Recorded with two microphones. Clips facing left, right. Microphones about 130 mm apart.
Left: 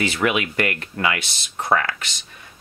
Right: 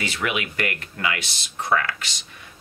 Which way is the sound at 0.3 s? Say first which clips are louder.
Left 4 dB; 50° left (ahead or behind).